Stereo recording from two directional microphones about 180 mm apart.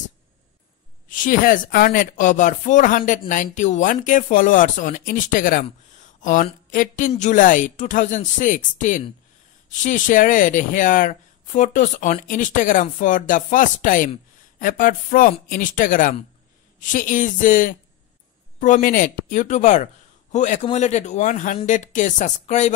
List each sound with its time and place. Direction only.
1.0 s a man's voice: 50° left (ahead or behind)